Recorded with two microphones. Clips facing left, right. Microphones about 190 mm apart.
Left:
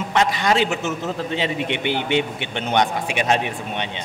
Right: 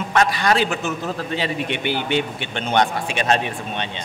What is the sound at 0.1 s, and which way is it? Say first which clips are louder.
A man's voice: right 1 dB; 20° left (ahead or behind).